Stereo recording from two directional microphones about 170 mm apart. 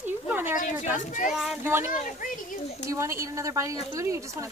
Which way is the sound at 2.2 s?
50° left (ahead or behind).